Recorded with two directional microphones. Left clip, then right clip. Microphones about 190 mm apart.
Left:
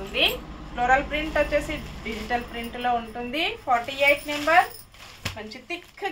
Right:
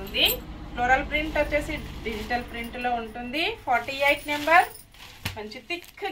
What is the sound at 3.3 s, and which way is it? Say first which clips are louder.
A woman's voice: left 1 dB; 20° left (ahead or behind).